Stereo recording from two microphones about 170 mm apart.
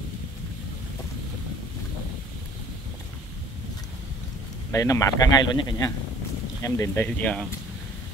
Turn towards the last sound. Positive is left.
turn(degrees=5)  # may be behind; listen again after turning